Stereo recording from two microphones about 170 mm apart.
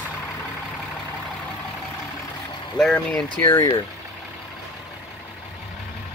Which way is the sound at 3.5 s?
25° left (ahead or behind).